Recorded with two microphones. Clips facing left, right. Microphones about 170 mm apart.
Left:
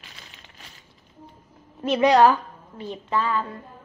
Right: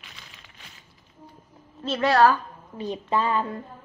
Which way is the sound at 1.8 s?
15° left (ahead or behind).